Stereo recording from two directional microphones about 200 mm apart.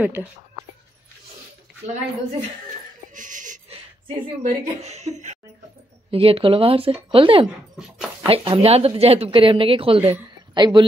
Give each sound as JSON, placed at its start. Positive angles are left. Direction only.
{"t": 0.0, "sound": "speech", "side_deg": -10}
{"t": 3.2, "sound": "a sound", "side_deg": -40}
{"t": 4.4, "sound": "a woman's voice", "side_deg": -35}
{"t": 7.7, "sound": "dog", "side_deg": -5}
{"t": 8.3, "sound": "speech", "side_deg": -30}